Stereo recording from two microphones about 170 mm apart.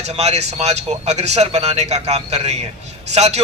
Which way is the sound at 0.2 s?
40° right (ahead or behind).